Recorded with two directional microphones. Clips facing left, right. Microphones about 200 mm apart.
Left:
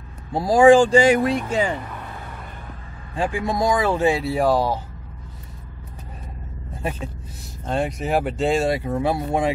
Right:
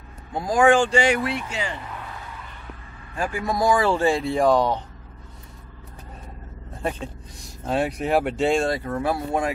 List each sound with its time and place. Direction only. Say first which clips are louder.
0.3 s speech: left 5 dB; 35° left (ahead or behind)
2.2 s vehicle: left 3 dB; 50° left (ahead or behind)
3.3 s speech: right 1 dB; 25° left (ahead or behind)
4.1 s speech: even; 5° left (ahead or behind)
6.8 s speech: even; 5° left (ahead or behind)
8.8 s speech: left 2 dB; 20° left (ahead or behind)